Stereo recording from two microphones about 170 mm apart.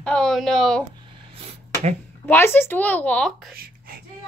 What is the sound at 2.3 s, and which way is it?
Speech, 15° left (ahead or behind).